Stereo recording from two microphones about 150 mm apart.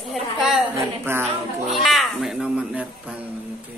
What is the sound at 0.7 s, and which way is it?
Speech, 15° right (ahead or behind).